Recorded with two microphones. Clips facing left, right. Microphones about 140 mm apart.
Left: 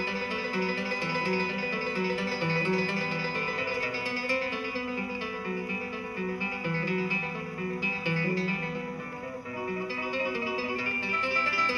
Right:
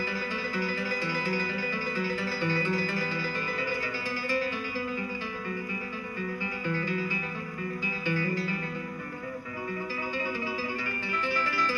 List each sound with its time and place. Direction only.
0.6 s music: 30° left (ahead or behind)
6.7 s music: 30° left (ahead or behind)